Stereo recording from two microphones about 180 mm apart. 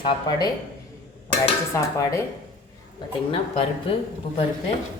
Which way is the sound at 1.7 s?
15° left (ahead or behind).